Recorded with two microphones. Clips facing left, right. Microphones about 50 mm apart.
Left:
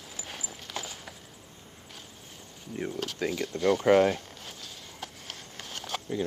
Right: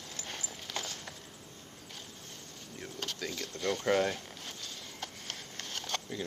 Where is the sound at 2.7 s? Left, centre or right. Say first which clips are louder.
Left 12 dB; left.